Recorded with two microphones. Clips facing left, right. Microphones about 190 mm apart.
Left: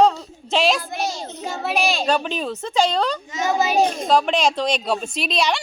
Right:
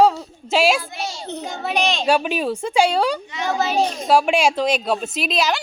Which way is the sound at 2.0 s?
10° right (ahead or behind).